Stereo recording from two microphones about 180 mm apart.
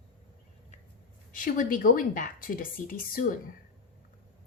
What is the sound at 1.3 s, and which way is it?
A woman's voice, 50° left (ahead or behind).